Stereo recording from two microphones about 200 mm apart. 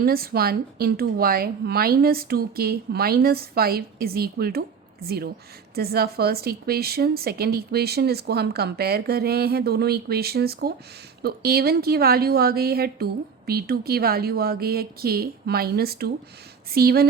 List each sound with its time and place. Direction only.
0.0 s a woman's voice: 50° right (ahead or behind)